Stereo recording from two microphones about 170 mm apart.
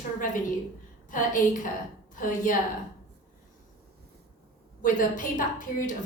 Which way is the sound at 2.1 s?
50° left (ahead or behind).